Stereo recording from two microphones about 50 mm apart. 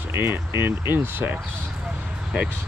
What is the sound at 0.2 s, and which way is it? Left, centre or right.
Speech, right.